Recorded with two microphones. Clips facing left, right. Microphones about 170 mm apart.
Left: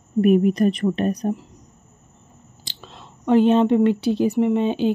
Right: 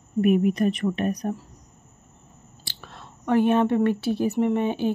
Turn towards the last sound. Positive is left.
turn(degrees=15)  # may be behind; listen again after turning